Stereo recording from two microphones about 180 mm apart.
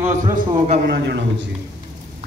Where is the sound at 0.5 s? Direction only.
35° right (ahead or behind).